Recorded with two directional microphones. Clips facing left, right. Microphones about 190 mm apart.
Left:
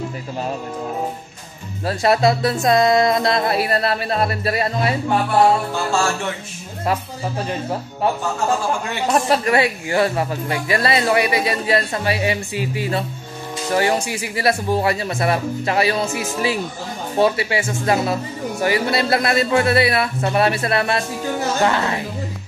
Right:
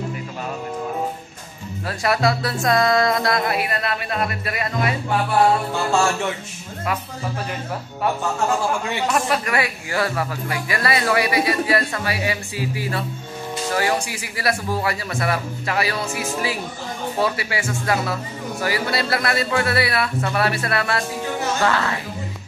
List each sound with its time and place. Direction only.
1.9 s speech: 25° left (ahead or behind)
9.1 s speech: 30° left (ahead or behind)